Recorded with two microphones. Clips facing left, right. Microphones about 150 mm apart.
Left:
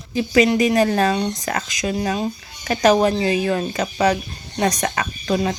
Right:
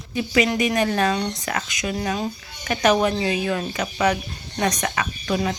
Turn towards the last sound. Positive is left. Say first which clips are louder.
# left 3 dB
turn(degrees=35)  # may be behind; listen again after turning